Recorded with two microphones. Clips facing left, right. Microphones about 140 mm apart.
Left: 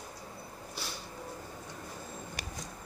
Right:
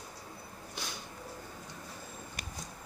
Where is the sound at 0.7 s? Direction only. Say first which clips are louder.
Even; 5° left (ahead or behind).